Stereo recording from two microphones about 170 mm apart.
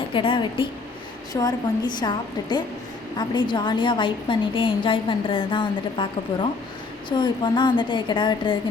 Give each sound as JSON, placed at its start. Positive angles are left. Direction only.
{"t": 0.1, "sound": "a woman's voice", "side_deg": 30}